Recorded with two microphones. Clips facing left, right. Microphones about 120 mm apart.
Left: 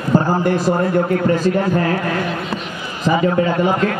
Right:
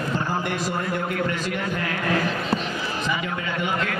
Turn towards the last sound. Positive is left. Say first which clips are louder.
# left 10 dB
turn(degrees=35)  # may be behind; listen again after turning